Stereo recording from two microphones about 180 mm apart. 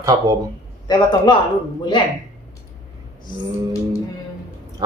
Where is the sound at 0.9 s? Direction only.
25° left (ahead or behind).